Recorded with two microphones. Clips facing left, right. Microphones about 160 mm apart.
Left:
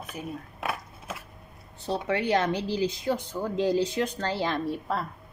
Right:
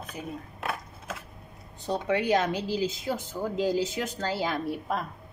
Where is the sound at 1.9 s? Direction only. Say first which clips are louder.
Right 1 dB; 15° right (ahead or behind).